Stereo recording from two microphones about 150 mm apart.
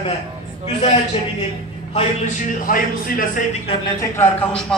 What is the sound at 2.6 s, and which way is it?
Speech, 65° left (ahead or behind).